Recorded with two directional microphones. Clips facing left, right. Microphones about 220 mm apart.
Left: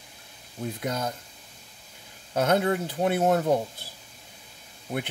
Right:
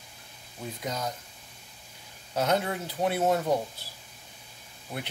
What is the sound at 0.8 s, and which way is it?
Speech, 55° left (ahead or behind).